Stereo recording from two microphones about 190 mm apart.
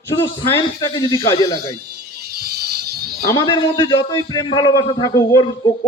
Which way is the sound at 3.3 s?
25° left (ahead or behind).